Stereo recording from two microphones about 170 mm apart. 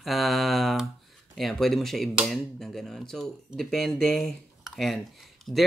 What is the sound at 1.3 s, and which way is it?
Speech, centre (ahead or behind).